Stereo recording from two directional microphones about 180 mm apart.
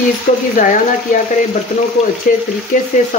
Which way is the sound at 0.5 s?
50° left (ahead or behind).